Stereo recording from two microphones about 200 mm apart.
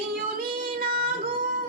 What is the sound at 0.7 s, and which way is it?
Female singing, 50° right (ahead or behind).